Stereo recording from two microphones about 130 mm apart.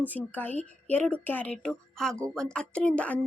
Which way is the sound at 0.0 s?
15° left (ahead or behind).